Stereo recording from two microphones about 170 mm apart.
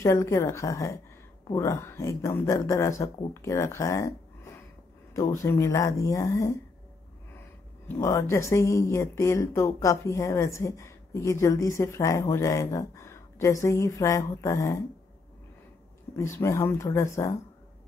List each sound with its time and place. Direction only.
0.0 s speech: 15° left (ahead or behind)
7.9 s speech: 15° left (ahead or behind)
16.2 s speech: 15° left (ahead or behind)